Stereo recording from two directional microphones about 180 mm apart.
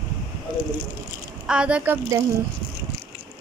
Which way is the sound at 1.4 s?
5° right (ahead or behind).